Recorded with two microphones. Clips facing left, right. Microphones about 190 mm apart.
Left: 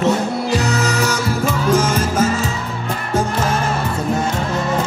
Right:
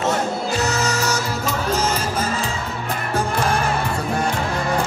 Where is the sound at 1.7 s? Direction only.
50° left (ahead or behind).